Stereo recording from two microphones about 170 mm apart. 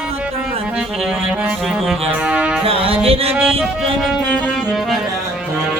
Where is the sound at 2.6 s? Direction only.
35° right (ahead or behind).